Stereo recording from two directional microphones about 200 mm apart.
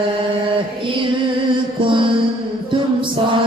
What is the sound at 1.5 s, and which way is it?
Music, 25° right (ahead or behind).